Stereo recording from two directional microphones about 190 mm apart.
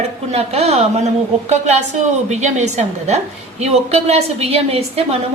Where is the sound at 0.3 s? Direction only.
35° right (ahead or behind).